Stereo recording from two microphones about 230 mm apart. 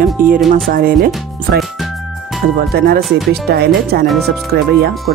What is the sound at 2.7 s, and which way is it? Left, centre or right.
Speech, right.